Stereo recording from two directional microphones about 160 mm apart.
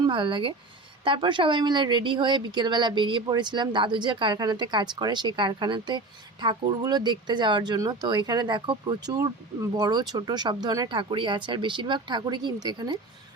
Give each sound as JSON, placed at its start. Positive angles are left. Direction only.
{"t": 0.0, "sound": "speech", "side_deg": -30}